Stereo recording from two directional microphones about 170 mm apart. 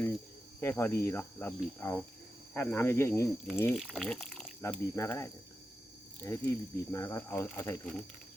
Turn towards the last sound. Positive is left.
turn(degrees=10)  # may be behind; listen again after turning